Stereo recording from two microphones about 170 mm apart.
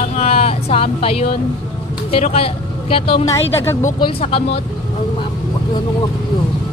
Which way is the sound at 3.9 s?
30° left (ahead or behind).